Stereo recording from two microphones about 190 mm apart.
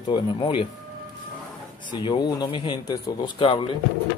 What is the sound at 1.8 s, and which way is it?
Speech, 25° left (ahead or behind).